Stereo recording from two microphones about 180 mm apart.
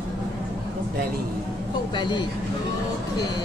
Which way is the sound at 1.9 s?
25° left (ahead or behind).